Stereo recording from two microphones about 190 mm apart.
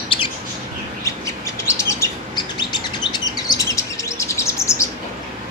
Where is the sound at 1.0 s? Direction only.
15° left (ahead or behind).